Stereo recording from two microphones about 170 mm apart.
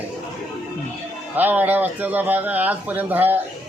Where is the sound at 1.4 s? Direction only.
10° right (ahead or behind).